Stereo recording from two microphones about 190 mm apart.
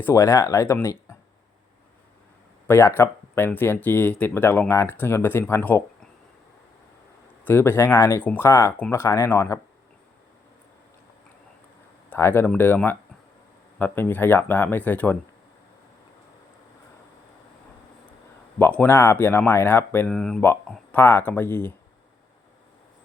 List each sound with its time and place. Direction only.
0.0 s speech: 15° left (ahead or behind)
2.6 s speech: 15° left (ahead or behind)
7.4 s speech: 10° left (ahead or behind)
12.1 s speech: 10° left (ahead or behind)
18.6 s speech: 10° left (ahead or behind)